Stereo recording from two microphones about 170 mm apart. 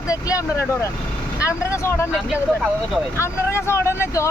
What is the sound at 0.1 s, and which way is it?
Speech, 20° left (ahead or behind).